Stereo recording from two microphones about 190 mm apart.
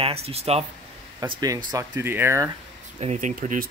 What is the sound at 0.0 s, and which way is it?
Speech, 30° right (ahead or behind).